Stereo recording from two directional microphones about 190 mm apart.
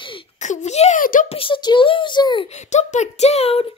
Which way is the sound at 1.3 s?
25° left (ahead or behind).